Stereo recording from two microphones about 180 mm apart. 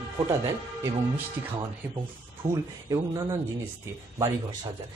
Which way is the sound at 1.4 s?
15° right (ahead or behind).